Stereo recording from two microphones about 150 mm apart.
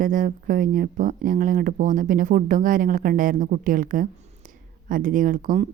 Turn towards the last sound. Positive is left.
turn(degrees=-60)  # may be behind; listen again after turning